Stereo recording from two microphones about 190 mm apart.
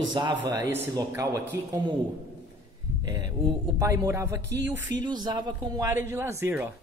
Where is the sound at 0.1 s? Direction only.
25° right (ahead or behind).